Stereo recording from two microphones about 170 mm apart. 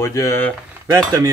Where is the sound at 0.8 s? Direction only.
20° right (ahead or behind).